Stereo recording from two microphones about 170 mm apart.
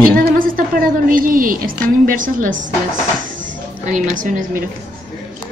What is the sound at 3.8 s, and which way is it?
Speech, 50° right (ahead or behind).